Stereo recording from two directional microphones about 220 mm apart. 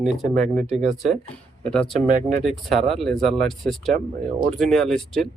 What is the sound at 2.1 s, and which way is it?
Speech, 35° right (ahead or behind).